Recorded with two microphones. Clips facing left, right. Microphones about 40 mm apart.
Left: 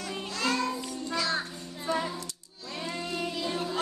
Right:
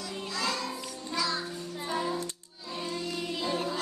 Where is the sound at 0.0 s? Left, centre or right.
Left.